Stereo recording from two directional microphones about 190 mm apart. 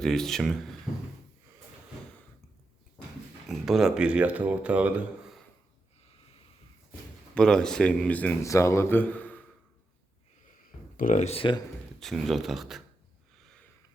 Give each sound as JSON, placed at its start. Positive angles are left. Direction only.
{"t": 0.0, "sound": "speech", "side_deg": 0}
{"t": 3.5, "sound": "speech", "side_deg": 0}
{"t": 7.3, "sound": "a man's voice", "side_deg": 5}
{"t": 10.9, "sound": "speech", "side_deg": 40}
{"t": 11.9, "sound": "speech", "side_deg": 0}